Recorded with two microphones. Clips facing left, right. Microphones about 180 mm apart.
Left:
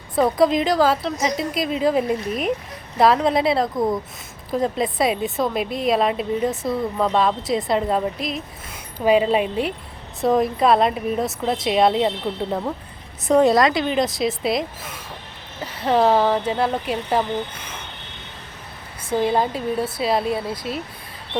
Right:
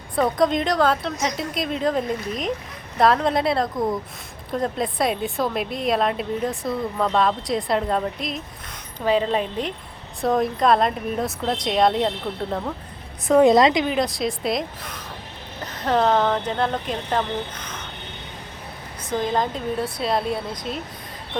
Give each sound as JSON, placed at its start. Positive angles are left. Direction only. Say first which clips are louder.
{"t": 0.2, "sound": "speech", "louder": "left 3 dB", "side_deg": 0}
{"t": 13.4, "sound": "a woman's voice", "louder": "right 3 dB", "side_deg": -20}
{"t": 13.8, "sound": "speech", "louder": "left 2 dB", "side_deg": 0}
{"t": 19.1, "sound": "speech", "louder": "left 3 dB", "side_deg": 10}